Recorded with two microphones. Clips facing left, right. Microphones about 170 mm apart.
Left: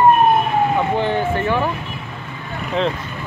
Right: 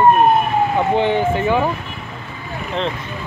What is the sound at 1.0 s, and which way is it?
Speech, 20° right (ahead or behind).